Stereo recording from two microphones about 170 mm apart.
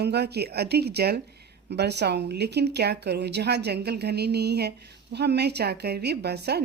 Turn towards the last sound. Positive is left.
turn(degrees=-75)  # may be behind; listen again after turning